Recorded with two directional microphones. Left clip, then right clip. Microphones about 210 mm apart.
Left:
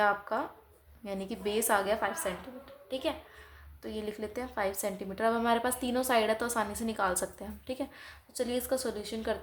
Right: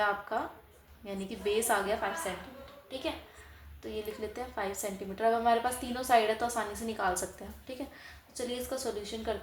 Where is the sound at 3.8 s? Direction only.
40° left (ahead or behind).